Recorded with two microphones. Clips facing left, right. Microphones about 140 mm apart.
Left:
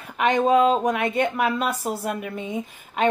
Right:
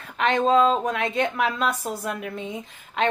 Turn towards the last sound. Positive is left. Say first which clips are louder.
# left 1 dB
turn(degrees=10)  # may be behind; listen again after turning